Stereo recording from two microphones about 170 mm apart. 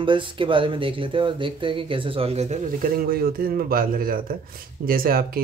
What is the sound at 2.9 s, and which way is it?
A man's voice, 60° right (ahead or behind).